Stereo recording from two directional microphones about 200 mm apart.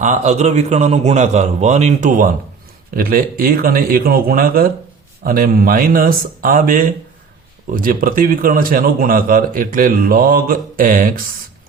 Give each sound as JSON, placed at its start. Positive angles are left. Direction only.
{"t": 0.0, "sound": "a man's voice", "side_deg": -35}